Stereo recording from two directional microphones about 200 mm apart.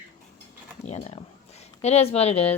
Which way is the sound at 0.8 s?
35° left (ahead or behind).